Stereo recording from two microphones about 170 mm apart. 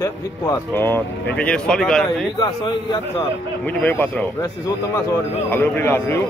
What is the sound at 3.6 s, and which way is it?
Speech, 10° left (ahead or behind).